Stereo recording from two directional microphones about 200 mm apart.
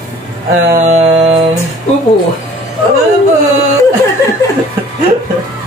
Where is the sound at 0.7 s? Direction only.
35° right (ahead or behind).